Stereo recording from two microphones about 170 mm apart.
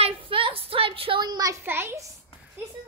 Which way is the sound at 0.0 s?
30° right (ahead or behind).